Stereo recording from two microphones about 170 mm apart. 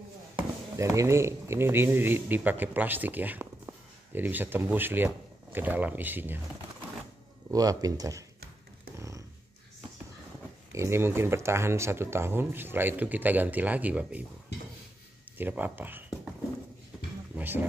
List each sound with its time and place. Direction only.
0.7 s speech: 15° right (ahead or behind)
7.5 s speech: 20° right (ahead or behind)
10.7 s speech: 15° right (ahead or behind)
15.3 s speech: 10° right (ahead or behind)
17.4 s speech: 10° right (ahead or behind)